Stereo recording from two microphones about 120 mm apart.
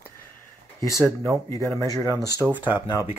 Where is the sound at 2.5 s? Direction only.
15° right (ahead or behind).